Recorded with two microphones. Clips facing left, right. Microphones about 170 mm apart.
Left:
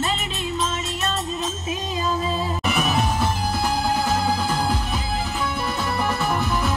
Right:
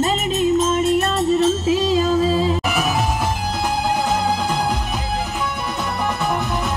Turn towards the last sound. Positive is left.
turn(degrees=-20)  # may be behind; listen again after turning